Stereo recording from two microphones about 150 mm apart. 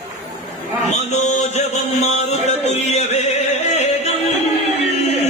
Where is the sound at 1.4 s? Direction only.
45° left (ahead or behind).